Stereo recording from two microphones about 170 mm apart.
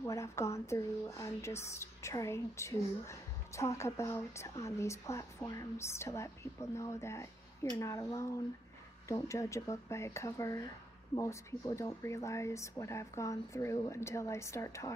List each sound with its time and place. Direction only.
0.0 s speech: 20° left (ahead or behind)